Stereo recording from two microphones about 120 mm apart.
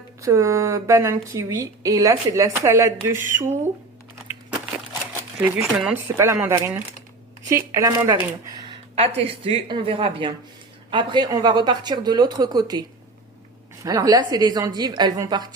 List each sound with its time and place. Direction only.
0.2 s speech: 25° right (ahead or behind)
5.7 s speech: 10° right (ahead or behind)
6.1 s speech: 20° right (ahead or behind)
9.0 s a woman's voice: 55° right (ahead or behind)
10.9 s speech: 35° right (ahead or behind)
13.8 s speech: 30° right (ahead or behind)